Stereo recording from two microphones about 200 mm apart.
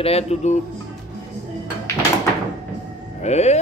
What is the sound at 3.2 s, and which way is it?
Speech, 35° left (ahead or behind).